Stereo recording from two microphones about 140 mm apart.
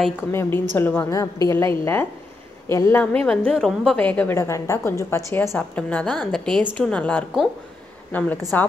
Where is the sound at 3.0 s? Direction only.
5° left (ahead or behind).